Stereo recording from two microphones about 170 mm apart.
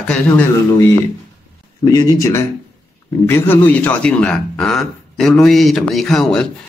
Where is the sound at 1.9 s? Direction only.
20° left (ahead or behind).